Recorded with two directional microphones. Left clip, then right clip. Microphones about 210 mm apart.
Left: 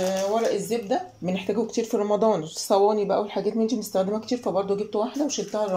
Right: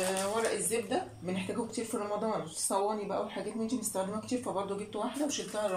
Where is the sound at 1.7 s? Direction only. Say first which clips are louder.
Left 11 dB; 45° left (ahead or behind).